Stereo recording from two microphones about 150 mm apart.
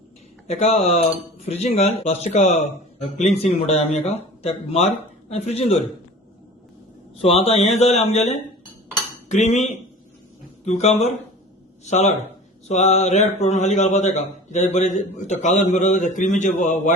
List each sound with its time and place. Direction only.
0.4 s a man's voice: 45° left (ahead or behind)
7.2 s a man's voice: 40° left (ahead or behind)
10.7 s a man's voice: 45° left (ahead or behind)